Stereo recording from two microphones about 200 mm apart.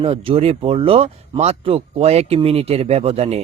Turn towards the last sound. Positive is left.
turn(degrees=-30)  # may be behind; listen again after turning